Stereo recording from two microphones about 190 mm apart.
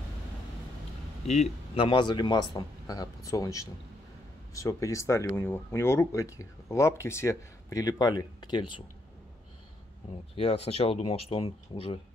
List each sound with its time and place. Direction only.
1.2 s speech: 35° left (ahead or behind)
10.3 s speech: 30° left (ahead or behind)